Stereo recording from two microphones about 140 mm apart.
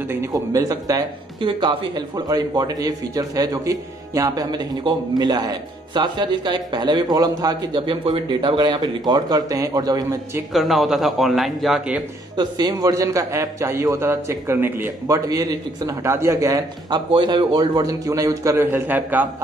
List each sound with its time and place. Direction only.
0.1 s speech: 25° right (ahead or behind)
10.5 s a man's voice: centre (ahead or behind)
12.4 s speech: 30° right (ahead or behind)
17.1 s speech: 35° right (ahead or behind); by 19.2 s 15° right (ahead or behind)